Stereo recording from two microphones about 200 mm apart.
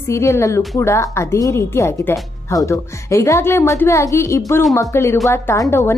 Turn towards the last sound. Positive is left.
turn(degrees=15)  # may be behind; listen again after turning